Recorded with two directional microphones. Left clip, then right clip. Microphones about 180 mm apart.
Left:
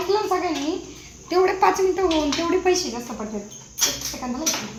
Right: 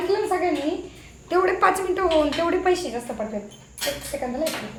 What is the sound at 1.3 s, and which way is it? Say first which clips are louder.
Speech: left 1 dB; 20° right (ahead or behind).